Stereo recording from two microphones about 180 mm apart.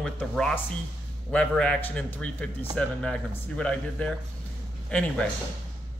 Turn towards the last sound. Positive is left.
turn(degrees=5)  # may be behind; listen again after turning